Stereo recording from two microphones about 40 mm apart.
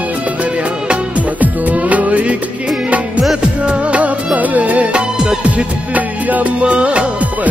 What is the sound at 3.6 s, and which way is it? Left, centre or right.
Music of bollywood, right.